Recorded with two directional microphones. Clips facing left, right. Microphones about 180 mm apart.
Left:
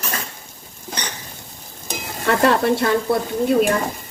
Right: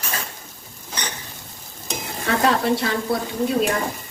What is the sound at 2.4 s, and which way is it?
Speech, 55° left (ahead or behind).